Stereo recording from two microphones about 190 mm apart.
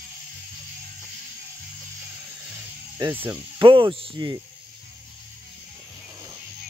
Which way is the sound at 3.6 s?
25° right (ahead or behind).